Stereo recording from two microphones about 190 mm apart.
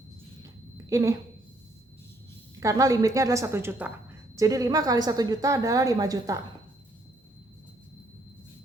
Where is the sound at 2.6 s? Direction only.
15° right (ahead or behind).